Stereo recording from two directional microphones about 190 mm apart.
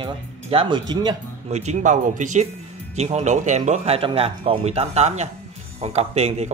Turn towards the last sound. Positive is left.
turn(degrees=-35)  # may be behind; listen again after turning